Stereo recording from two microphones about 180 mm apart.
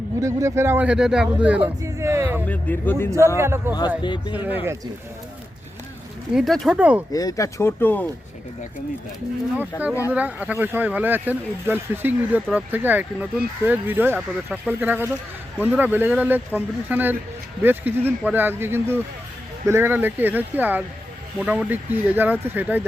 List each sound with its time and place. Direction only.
0.2 s speech: 15° right (ahead or behind)
2.5 s speech: 10° left (ahead or behind)
3.3 s speech: 15° right (ahead or behind)
3.8 s speech: 25° left (ahead or behind)
4.3 s speech: 10° right (ahead or behind)
6.3 s speech: centre (ahead or behind)
7.1 s speech: 20° left (ahead or behind)
9.7 s speech: 20° left (ahead or behind)
10.1 s speech: 10° right (ahead or behind)